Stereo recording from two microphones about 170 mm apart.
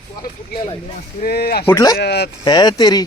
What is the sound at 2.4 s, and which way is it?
Speech, 25° left (ahead or behind).